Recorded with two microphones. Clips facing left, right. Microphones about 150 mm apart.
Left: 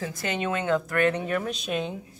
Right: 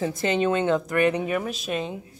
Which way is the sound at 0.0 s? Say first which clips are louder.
Right 6 dB; 25° right (ahead or behind).